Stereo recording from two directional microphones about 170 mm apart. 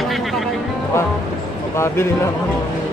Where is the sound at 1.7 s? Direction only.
15° left (ahead or behind).